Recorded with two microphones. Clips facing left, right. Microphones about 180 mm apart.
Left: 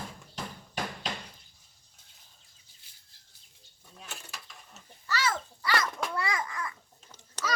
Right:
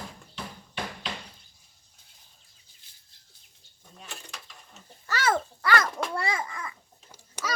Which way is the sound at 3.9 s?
Centre (ahead or behind).